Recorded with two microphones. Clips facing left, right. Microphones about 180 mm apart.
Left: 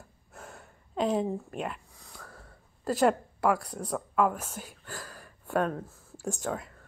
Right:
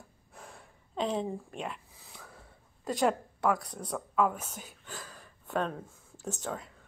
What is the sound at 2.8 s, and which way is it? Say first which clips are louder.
Speech: left 4 dB; 5° left (ahead or behind).